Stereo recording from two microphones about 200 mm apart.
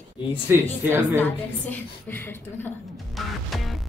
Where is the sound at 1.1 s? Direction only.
10° left (ahead or behind).